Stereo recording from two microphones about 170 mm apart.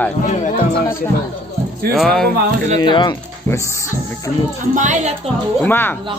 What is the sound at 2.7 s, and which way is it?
Speech, 25° left (ahead or behind).